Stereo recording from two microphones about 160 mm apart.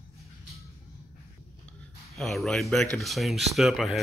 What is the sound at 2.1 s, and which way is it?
Speech, centre (ahead or behind).